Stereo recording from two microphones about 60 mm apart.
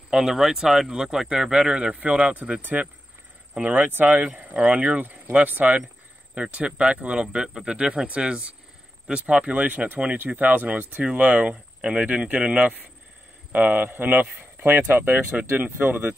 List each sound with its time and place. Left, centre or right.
0.1 s speech: centre; by 4.3 s right
4.4 s speech: centre; by 16.2 s right